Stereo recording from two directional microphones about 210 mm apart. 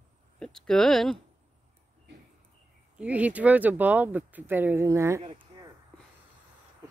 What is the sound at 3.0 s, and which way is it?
Speech, 5° right (ahead or behind).